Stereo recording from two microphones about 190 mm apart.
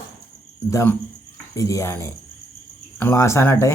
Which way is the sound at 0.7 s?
15° left (ahead or behind).